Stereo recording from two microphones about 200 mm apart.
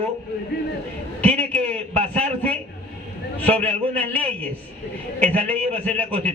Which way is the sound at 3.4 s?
10° left (ahead or behind).